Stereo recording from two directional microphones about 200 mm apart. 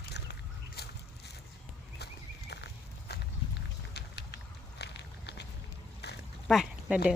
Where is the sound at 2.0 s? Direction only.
55° left (ahead or behind).